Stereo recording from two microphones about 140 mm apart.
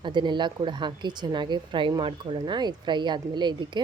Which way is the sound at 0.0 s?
35° right (ahead or behind).